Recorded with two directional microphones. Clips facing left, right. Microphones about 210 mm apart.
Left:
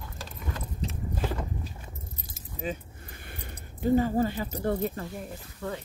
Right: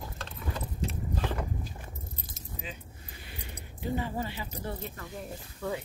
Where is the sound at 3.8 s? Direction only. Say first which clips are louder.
Left 9 dB; 45° left (ahead or behind).